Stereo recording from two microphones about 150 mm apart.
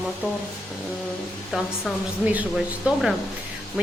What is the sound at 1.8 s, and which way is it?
Speech, 10° right (ahead or behind).